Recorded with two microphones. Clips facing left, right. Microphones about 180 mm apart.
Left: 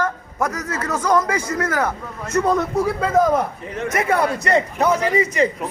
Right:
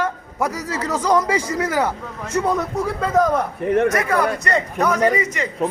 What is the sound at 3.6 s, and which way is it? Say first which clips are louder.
Speech: right 11 dB; 60° right (ahead or behind).